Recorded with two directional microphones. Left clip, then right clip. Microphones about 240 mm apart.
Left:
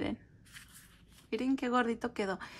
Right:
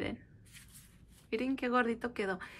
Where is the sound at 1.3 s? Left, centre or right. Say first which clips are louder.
Even; centre.